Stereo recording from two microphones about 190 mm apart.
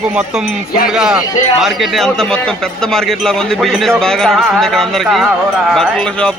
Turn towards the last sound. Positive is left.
turn(degrees=0)  # may be behind; listen again after turning